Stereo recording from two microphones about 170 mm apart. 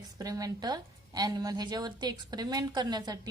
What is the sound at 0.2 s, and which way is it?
A woman's voice, 20° right (ahead or behind).